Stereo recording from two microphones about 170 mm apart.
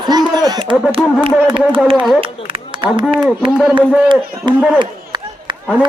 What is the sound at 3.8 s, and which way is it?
Speech, 25° right (ahead or behind).